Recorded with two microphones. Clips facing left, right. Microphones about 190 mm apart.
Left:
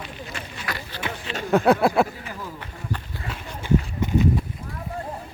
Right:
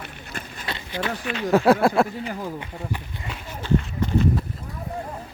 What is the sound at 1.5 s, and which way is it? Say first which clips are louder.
Speech: right 1 dB; centre (ahead or behind).